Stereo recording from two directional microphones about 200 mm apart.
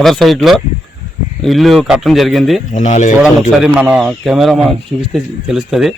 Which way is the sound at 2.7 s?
35° left (ahead or behind).